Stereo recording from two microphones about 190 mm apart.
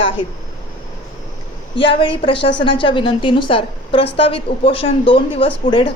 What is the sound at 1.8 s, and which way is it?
A woman's voice, 25° left (ahead or behind).